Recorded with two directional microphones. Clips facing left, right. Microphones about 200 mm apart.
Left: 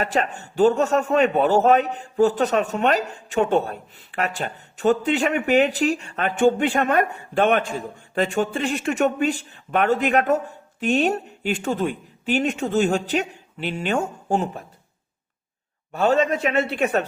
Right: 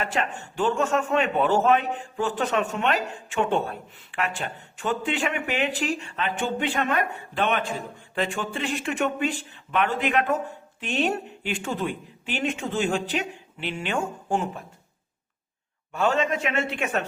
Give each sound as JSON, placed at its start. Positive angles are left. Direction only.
{"t": 0.0, "sound": "a man's voice", "side_deg": 40}
{"t": 15.9, "sound": "a man's voice", "side_deg": 35}